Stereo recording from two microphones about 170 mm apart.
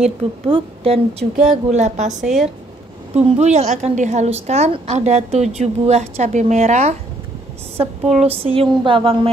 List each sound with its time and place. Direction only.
0.0 s a woman's voice: 35° right (ahead or behind)
1.5 s a woman's voice: 40° right (ahead or behind)
2.2 s speech: centre (ahead or behind)
3.2 s a woman's voice: 40° right (ahead or behind)